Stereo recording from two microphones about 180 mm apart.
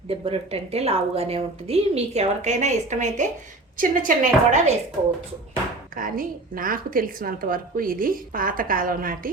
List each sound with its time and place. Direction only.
0.1 s a woman's voice: 30° right (ahead or behind)
6.0 s a woman's voice: 50° right (ahead or behind)